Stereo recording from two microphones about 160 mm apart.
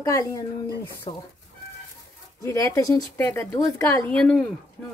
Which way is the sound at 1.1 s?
35° left (ahead or behind).